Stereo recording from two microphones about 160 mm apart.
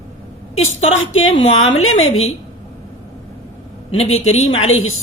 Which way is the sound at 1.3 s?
40° left (ahead or behind).